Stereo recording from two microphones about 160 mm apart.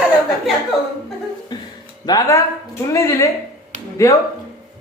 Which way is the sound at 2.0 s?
25° left (ahead or behind).